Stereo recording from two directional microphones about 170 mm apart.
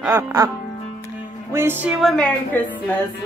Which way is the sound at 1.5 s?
15° right (ahead or behind).